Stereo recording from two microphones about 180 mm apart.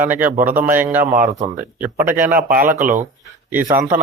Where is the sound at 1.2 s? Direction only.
45° right (ahead or behind).